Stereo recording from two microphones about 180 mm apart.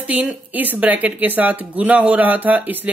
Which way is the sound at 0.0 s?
5° right (ahead or behind).